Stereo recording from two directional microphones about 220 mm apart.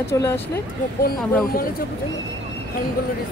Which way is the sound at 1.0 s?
40° left (ahead or behind).